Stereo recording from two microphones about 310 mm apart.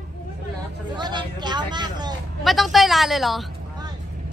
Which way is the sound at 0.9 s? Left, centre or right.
Centre.